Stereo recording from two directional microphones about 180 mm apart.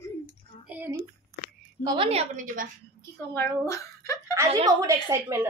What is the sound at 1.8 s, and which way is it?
Speech, 25° right (ahead or behind).